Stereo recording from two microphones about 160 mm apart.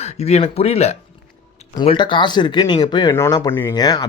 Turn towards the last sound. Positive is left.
turn(degrees=25)  # may be behind; listen again after turning